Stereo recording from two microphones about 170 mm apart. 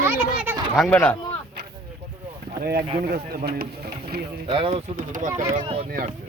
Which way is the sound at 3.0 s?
60° right (ahead or behind).